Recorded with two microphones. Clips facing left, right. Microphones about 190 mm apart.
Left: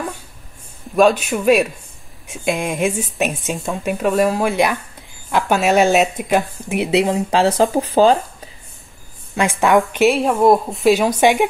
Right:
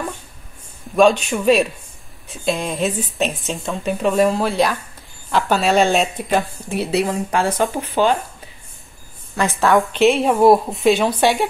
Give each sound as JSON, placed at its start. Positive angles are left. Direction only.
{"t": 0.9, "sound": "speech", "side_deg": 5}
{"t": 7.7, "sound": "speech", "side_deg": 35}
{"t": 9.3, "sound": "a woman's voice", "side_deg": 15}
{"t": 9.9, "sound": "a woman's voice", "side_deg": 0}
{"t": 11.1, "sound": "speech", "side_deg": 15}